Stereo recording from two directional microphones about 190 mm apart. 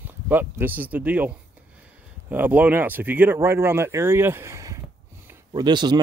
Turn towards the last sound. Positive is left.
turn(degrees=-20)  # may be behind; listen again after turning